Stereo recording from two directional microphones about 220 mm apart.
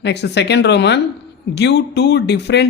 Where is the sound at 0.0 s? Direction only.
50° left (ahead or behind).